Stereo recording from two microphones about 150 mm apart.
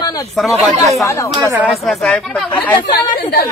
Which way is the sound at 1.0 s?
20° left (ahead or behind).